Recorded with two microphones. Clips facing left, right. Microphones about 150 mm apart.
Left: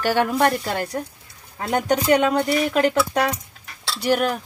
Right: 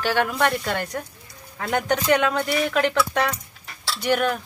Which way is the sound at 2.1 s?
35° left (ahead or behind).